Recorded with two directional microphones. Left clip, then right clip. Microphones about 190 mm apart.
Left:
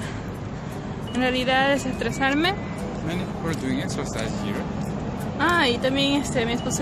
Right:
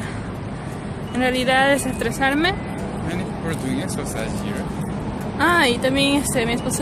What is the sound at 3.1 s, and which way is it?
Speech, 45° left (ahead or behind).